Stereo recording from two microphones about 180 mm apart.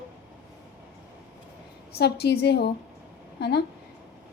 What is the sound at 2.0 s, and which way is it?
Speech, 65° left (ahead or behind).